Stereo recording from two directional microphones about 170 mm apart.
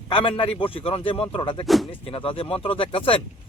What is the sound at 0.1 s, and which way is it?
Speech, 30° left (ahead or behind).